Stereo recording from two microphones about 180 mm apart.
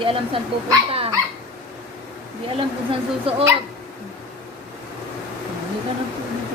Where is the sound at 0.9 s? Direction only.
30° right (ahead or behind).